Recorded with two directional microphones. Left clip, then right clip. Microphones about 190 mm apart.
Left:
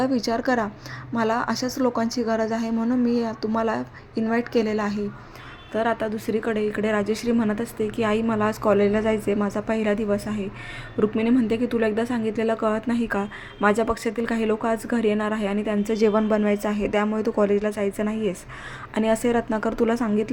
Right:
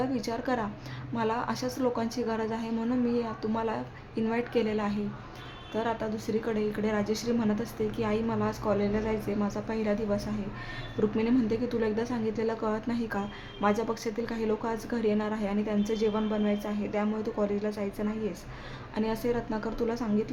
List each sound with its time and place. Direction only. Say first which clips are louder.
0.0 s a woman's voice: left 8 dB; 30° left (ahead or behind)